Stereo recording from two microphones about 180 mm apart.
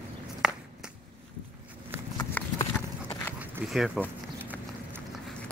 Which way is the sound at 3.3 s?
5° right (ahead or behind).